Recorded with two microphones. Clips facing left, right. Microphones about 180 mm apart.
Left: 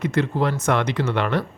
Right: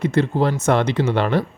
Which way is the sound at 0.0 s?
30° right (ahead or behind).